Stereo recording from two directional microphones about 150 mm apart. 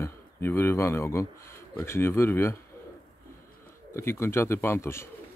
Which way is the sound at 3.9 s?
15° left (ahead or behind).